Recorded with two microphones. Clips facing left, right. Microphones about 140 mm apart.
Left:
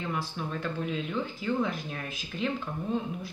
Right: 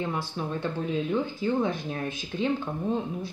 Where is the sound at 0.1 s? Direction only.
25° right (ahead or behind).